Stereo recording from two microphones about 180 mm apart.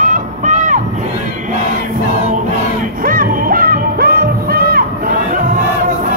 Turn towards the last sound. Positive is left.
turn(degrees=-55)  # may be behind; listen again after turning